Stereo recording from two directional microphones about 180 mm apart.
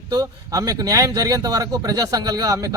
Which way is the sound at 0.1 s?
20° right (ahead or behind).